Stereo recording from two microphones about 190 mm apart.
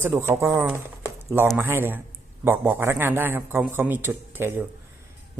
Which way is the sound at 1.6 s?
10° right (ahead or behind).